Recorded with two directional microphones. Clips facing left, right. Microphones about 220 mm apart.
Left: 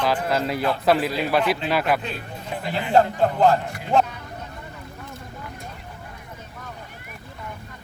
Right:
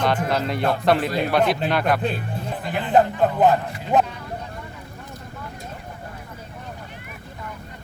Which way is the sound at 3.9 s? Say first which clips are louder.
Right 1 dB; 20° right (ahead or behind).